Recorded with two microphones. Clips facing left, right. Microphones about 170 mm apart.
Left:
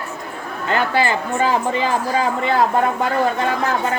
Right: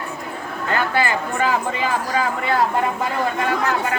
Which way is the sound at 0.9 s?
30° left (ahead or behind).